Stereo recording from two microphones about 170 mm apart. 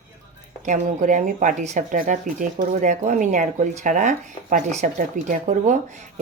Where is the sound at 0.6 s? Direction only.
50° right (ahead or behind).